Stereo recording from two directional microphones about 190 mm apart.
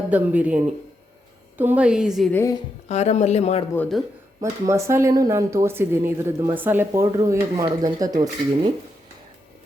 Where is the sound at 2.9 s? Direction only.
35° left (ahead or behind).